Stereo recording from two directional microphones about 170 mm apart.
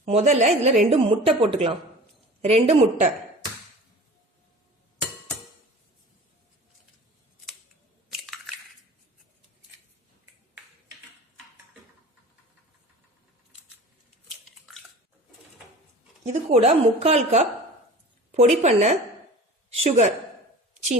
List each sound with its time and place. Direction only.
0.0 s speech: 40° right (ahead or behind)
8.1 s crushing: centre (ahead or behind)
16.2 s a woman's voice: 40° right (ahead or behind)